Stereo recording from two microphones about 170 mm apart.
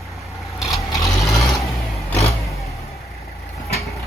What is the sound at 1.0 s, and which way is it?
Vehicle, centre (ahead or behind).